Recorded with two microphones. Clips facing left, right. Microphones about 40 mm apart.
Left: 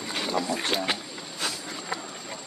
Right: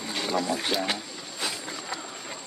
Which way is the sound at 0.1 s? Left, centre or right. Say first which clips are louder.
Right 1 dB; centre.